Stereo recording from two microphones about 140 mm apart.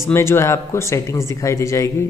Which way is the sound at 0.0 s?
20° left (ahead or behind).